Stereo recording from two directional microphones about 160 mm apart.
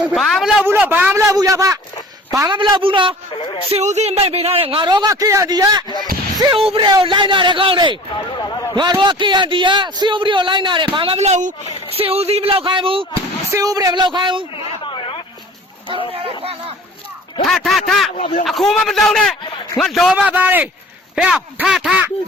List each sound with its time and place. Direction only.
0.0 s a sound: 5° right (ahead or behind)
0.6 s a man's voice: 15° right (ahead or behind); by 3.2 s 30° right (ahead or behind)
3.3 s speech: 35° left (ahead or behind)
3.7 s a man's voice: 45° right (ahead or behind)
13.5 s a man's voice: 20° right (ahead or behind)
14.5 s a sound: 30° left (ahead or behind)
16.1 s a man's voice: 35° right (ahead or behind)
17.4 s a man's voice: centre (ahead or behind)
18.1 s speech: 55° left (ahead or behind)
18.4 s a man's voice: centre (ahead or behind)